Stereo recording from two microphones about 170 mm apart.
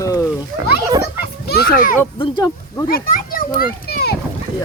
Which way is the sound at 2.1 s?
30° left (ahead or behind).